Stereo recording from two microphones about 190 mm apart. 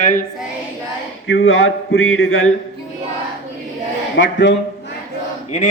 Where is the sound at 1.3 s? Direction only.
90° left.